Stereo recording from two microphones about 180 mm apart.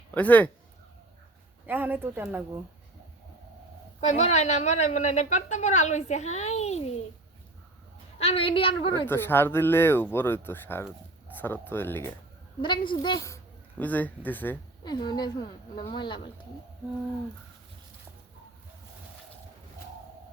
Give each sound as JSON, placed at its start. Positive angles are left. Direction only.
{"t": 0.1, "sound": "speech", "side_deg": 10}
{"t": 1.6, "sound": "speech", "side_deg": -10}
{"t": 4.0, "sound": "a woman's voice", "side_deg": 40}
{"t": 8.2, "sound": "a woman's voice", "side_deg": 30}
{"t": 9.0, "sound": "speech", "side_deg": 10}
{"t": 12.6, "sound": "speech", "side_deg": 25}
{"t": 14.8, "sound": "a woman's voice", "side_deg": 25}